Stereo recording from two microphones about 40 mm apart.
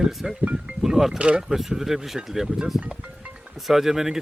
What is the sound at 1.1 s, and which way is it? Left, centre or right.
Speech, right.